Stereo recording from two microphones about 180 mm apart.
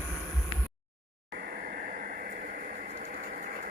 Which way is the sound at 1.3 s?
55° right (ahead or behind).